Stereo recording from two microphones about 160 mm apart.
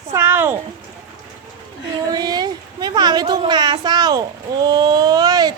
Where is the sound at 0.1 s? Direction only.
15° right (ahead or behind).